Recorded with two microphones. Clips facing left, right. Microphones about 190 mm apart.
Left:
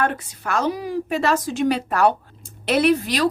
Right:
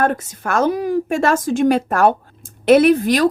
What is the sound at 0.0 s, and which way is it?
A woman's voice, 45° right (ahead or behind).